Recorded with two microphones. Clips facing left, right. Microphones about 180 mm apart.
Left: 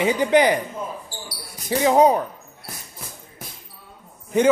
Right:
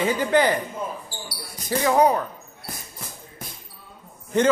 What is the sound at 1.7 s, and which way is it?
Speech, 20° left (ahead or behind).